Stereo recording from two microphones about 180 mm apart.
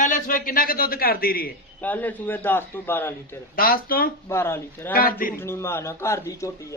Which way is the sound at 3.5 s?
55° left (ahead or behind).